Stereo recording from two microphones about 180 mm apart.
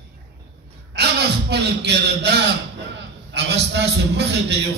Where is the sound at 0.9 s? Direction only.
65° right (ahead or behind).